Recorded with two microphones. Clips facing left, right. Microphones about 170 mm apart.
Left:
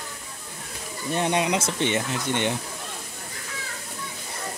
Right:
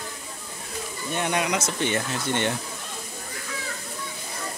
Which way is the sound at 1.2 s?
30° left (ahead or behind).